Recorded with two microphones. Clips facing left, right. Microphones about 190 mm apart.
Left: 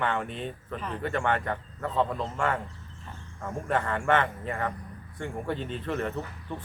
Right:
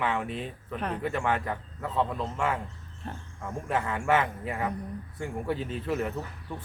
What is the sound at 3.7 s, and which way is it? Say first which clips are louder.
A man's voice: left 1 dB; 5° right (ahead or behind).